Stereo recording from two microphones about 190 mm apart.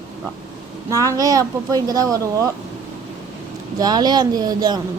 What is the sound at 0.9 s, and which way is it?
Speech, 15° right (ahead or behind).